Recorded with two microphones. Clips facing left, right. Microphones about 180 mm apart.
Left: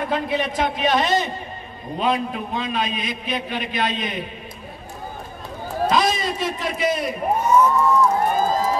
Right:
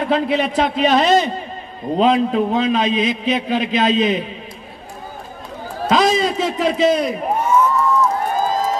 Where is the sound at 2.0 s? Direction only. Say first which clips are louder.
Right 8 dB; 90° right.